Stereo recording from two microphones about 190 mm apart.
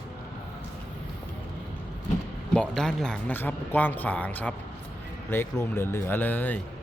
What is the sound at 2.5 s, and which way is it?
Speech, 5° left (ahead or behind).